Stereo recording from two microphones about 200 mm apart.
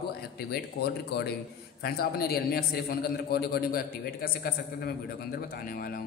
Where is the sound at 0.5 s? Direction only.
55° left (ahead or behind).